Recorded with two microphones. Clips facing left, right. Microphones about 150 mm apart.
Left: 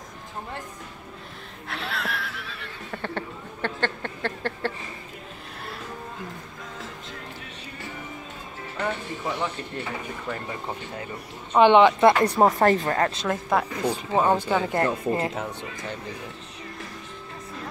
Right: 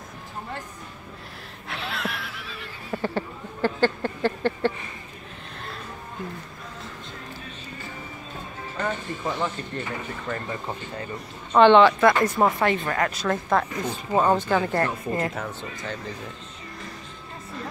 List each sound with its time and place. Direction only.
1.7 s neigh: centre (ahead or behind)
8.8 s speech: 10° left (ahead or behind)
11.5 s speech: 15° left (ahead or behind)
12.3 s a woman's voice: 35° left (ahead or behind); by 14.6 s 5° left (ahead or behind)
14.7 s a woman's voice: 20° left (ahead or behind)